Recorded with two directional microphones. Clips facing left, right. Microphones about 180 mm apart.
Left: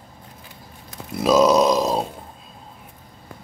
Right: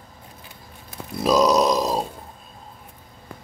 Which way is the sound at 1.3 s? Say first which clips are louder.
Left 2 dB; 25° left (ahead or behind).